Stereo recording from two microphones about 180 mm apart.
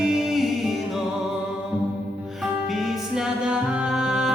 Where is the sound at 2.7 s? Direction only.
Centre (ahead or behind).